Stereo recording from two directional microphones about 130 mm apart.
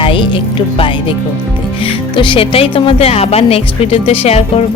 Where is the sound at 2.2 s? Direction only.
40° left (ahead or behind).